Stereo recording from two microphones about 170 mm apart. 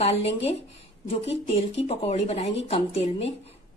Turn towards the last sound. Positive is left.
turn(degrees=35)  # may be behind; listen again after turning